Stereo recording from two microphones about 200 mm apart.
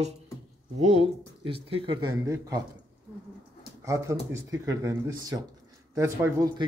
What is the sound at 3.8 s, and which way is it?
Speech, 15° right (ahead or behind).